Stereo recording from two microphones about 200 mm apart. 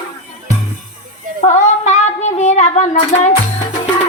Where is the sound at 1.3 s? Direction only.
35° left (ahead or behind).